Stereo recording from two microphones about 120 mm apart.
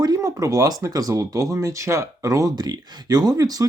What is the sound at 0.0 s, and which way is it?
Speech, 30° right (ahead or behind).